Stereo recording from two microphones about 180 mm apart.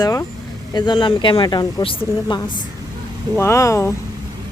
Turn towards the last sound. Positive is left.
turn(degrees=15)  # may be behind; listen again after turning